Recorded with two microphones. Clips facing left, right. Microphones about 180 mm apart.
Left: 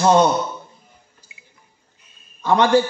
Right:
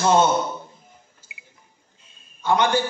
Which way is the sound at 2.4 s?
35° left (ahead or behind).